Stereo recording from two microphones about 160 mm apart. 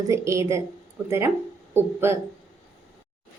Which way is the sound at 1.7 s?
15° right (ahead or behind).